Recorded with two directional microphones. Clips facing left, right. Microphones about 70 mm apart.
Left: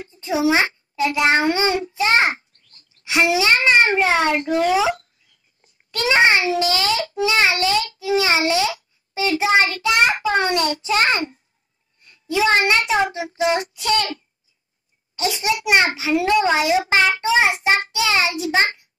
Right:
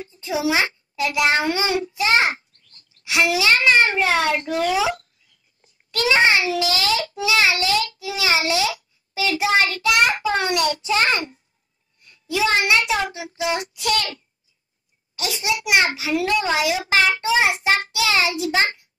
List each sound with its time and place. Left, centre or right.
0.2 s a child's voice: left
2.9 s child singing: left
5.9 s child singing: left
12.0 s a child's voice: left
13.1 s child singing: left
15.1 s a child's voice: left
15.9 s child singing: left